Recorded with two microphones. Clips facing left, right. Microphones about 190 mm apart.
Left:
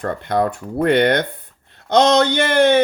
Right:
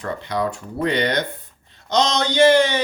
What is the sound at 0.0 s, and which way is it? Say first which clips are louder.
A man's voice: left 4 dB; 50° left (ahead or behind).